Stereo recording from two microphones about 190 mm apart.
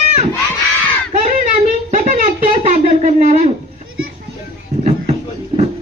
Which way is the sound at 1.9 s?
40° right (ahead or behind).